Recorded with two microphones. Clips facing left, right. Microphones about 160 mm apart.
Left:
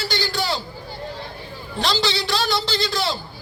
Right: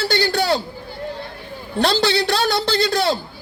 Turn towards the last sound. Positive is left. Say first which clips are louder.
# right 5 dB
turn(degrees=-60)  # may be behind; listen again after turning